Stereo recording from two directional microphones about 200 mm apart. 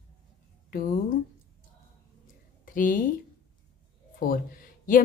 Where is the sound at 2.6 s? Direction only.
45° left (ahead or behind).